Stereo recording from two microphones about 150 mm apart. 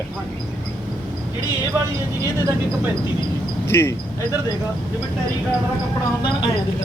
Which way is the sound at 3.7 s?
15° left (ahead or behind).